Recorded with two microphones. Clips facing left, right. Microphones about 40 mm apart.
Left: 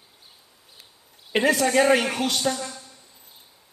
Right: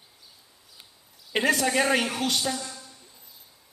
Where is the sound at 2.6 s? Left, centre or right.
Left.